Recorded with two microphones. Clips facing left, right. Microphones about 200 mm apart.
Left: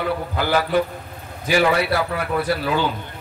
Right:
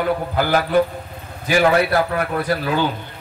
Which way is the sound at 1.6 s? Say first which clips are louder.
Right 4 dB; 45° right (ahead or behind).